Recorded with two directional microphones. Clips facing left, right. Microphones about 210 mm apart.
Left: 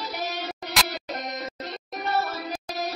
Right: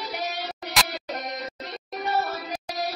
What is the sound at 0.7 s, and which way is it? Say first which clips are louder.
Music: right 1 dB; centre (ahead or behind).